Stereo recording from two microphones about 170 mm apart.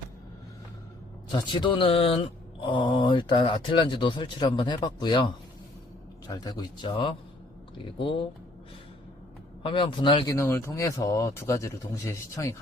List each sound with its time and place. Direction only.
1.3 s speech: 30° left (ahead or behind)
9.6 s speech: 30° left (ahead or behind)
10.2 s speech: 15° left (ahead or behind)